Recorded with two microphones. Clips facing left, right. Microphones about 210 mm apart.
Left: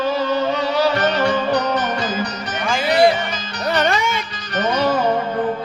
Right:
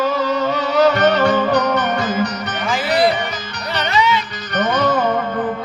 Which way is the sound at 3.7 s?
50° left (ahead or behind).